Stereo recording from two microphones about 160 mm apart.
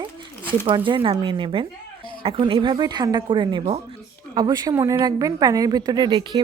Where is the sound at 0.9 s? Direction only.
30° right (ahead or behind).